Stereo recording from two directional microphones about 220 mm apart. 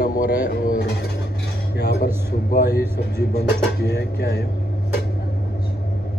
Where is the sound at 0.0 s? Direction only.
40° left (ahead or behind).